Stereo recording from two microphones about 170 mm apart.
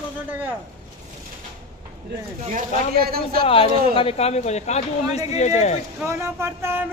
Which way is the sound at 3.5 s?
35° left (ahead or behind).